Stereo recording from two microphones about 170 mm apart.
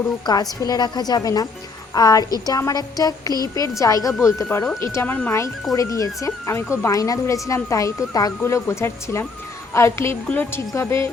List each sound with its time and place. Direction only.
0.3 s a woman's voice: 20° left (ahead or behind)
4.4 s a woman's voice: 5° left (ahead or behind)